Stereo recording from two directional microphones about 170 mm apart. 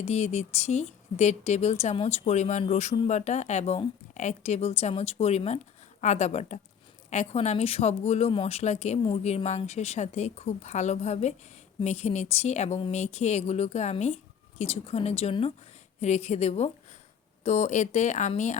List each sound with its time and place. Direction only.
0.0 s a woman's voice: 40° left (ahead or behind)